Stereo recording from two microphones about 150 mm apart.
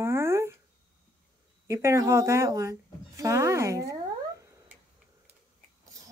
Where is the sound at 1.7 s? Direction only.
20° right (ahead or behind).